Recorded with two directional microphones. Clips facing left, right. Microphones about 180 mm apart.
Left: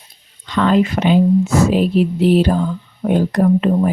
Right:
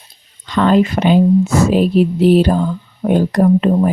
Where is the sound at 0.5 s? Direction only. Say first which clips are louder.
Right 2 dB; 40° right (ahead or behind).